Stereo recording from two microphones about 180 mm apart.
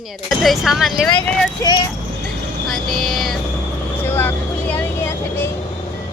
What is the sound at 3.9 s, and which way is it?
Vehicle, 10° left (ahead or behind).